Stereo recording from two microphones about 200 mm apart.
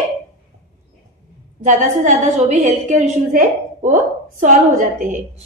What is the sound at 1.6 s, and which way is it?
A woman's voice, 40° right (ahead or behind).